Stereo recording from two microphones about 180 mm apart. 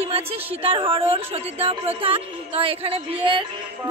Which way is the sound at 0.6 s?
30° right (ahead or behind).